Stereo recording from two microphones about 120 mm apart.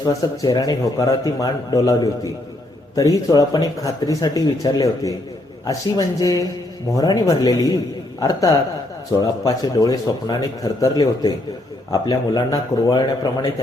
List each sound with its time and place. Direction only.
0.0 s a man's voice: 30° left (ahead or behind)